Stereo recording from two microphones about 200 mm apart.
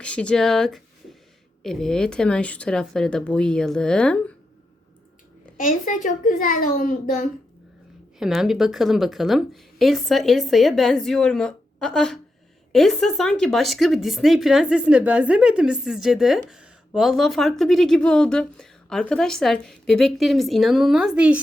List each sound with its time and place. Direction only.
0.0 s speech: 5° left (ahead or behind)
5.5 s a child's voice: 40° left (ahead or behind)
8.2 s speech: centre (ahead or behind)